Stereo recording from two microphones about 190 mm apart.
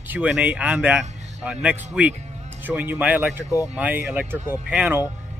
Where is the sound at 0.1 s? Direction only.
10° right (ahead or behind).